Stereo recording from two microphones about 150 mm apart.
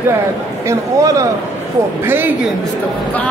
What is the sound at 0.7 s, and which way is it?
Speech, 20° right (ahead or behind).